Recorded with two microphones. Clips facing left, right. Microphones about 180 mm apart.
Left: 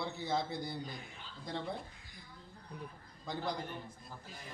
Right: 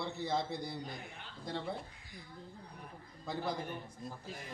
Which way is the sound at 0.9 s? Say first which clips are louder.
Right 1 dB; 60° right (ahead or behind).